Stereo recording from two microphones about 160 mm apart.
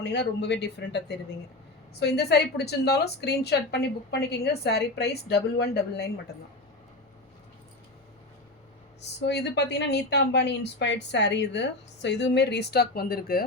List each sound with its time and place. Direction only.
0.0 s a woman's voice: 90° left
9.2 s a woman's voice: 90° left; by 13.4 s 70° left (ahead or behind)